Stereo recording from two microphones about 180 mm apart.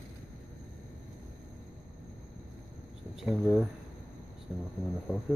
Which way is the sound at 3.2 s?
Centre (ahead or behind).